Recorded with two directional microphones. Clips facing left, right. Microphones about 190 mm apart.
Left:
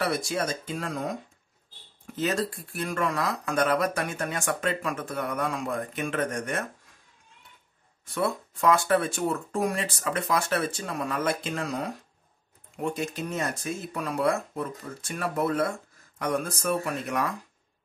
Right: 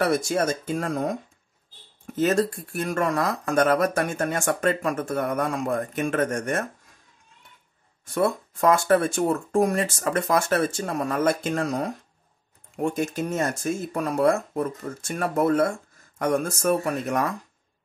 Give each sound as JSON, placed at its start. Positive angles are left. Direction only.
{"t": 0.0, "sound": "speech", "side_deg": -50}
{"t": 2.1, "sound": "speech", "side_deg": -50}
{"t": 8.0, "sound": "speech", "side_deg": -50}